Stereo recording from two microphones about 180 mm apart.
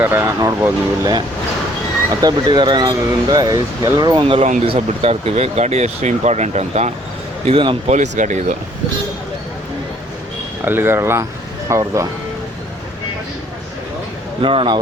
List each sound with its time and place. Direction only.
0.0 s speech: 15° right (ahead or behind)
2.2 s speech: 25° right (ahead or behind)
7.9 s speech: 45° right (ahead or behind)
10.7 s speech: 10° right (ahead or behind)
14.4 s speech: 30° right (ahead or behind)